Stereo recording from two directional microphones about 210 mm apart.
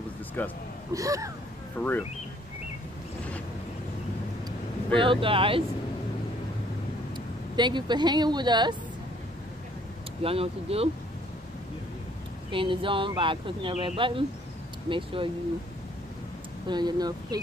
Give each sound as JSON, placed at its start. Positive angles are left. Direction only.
{"t": 0.4, "sound": "speech", "side_deg": 10}
{"t": 0.9, "sound": "speech", "side_deg": -15}
{"t": 1.8, "sound": "speech", "side_deg": 10}
{"t": 4.9, "sound": "speech", "side_deg": -25}
{"t": 7.5, "sound": "speech", "side_deg": -20}
{"t": 10.2, "sound": "speech", "side_deg": -25}
{"t": 12.4, "sound": "speech", "side_deg": -25}
{"t": 16.6, "sound": "speech", "side_deg": -20}